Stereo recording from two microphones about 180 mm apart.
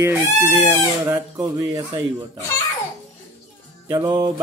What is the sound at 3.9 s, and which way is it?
Speech, 20° right (ahead or behind).